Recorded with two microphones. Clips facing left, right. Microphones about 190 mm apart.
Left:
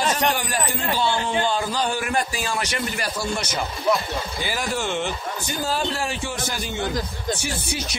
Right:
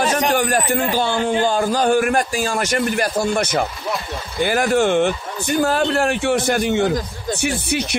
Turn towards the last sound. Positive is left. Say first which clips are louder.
# right 7 dB
turn(degrees=-65)  # may be behind; listen again after turning